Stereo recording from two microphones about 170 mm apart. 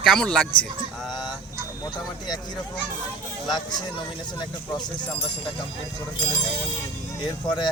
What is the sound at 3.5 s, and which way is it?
Speech, 25° left (ahead or behind).